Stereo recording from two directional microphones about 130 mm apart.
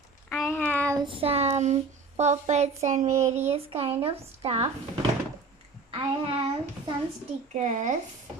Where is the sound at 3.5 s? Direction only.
50° right (ahead or behind).